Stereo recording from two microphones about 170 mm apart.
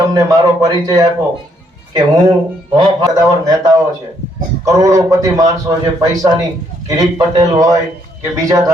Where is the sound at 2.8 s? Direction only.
20° right (ahead or behind).